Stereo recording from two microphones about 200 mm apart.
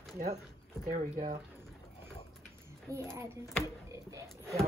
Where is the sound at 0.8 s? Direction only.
40° right (ahead or behind).